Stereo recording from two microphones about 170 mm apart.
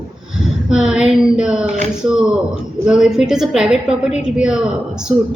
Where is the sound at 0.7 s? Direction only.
5° right (ahead or behind).